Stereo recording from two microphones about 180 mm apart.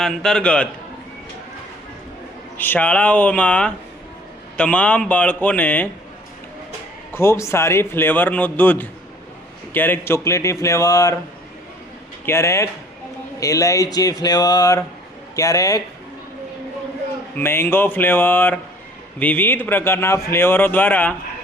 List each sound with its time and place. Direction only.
0.0 s a man's voice: 5° left (ahead or behind)
2.6 s a man's voice: 10° left (ahead or behind)
7.1 s a man's voice: 15° left (ahead or behind)
12.2 s a man's voice: 15° left (ahead or behind)
17.3 s a man's voice: 15° left (ahead or behind)